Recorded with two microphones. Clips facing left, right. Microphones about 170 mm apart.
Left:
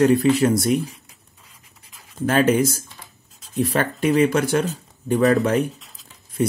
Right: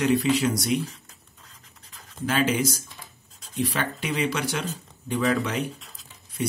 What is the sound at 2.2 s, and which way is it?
Speech, 50° left (ahead or behind).